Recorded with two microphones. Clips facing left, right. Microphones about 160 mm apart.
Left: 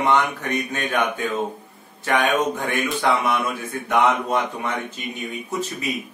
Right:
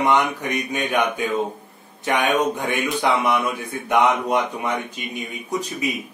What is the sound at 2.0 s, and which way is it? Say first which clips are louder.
Speech: even; 20° right (ahead or behind).